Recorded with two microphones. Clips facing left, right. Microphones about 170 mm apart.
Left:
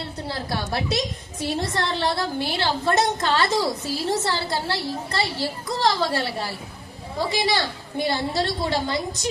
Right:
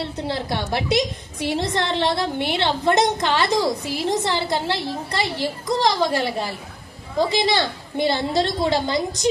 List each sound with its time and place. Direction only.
0.0 s a woman's voice: 20° right (ahead or behind)